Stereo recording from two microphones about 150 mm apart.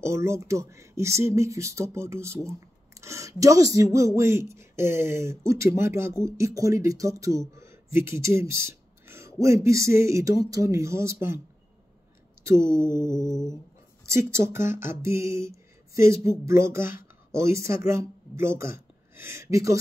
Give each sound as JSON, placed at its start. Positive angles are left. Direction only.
{"t": 0.0, "sound": "speech", "side_deg": -20}
{"t": 12.4, "sound": "speech", "side_deg": -20}
{"t": 13.0, "sound": "music", "side_deg": 25}
{"t": 14.0, "sound": "speech", "side_deg": -20}